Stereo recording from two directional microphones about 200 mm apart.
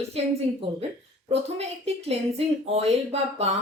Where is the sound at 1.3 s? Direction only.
30° right (ahead or behind).